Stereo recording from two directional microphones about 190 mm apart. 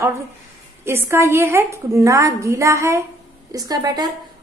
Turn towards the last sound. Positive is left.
turn(degrees=-20)  # may be behind; listen again after turning